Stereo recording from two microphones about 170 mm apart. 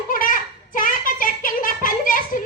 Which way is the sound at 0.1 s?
55° left (ahead or behind).